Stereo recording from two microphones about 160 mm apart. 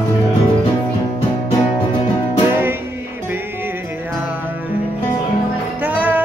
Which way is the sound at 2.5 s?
15° right (ahead or behind).